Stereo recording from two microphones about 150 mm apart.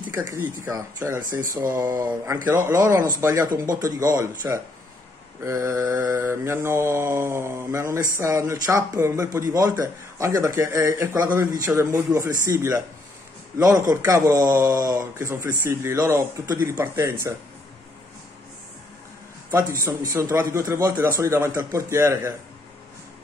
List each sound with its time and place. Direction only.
0.1 s speech: 15° right (ahead or behind)
1.6 s mantra: 10° right (ahead or behind)
2.0 s speech: 20° right (ahead or behind)
5.4 s mantra: 20° right (ahead or behind)
8.2 s speech: 20° right (ahead or behind)
19.7 s speech: 20° right (ahead or behind)